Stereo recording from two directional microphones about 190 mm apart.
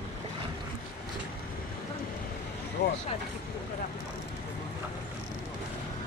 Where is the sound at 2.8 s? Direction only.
60° left (ahead or behind).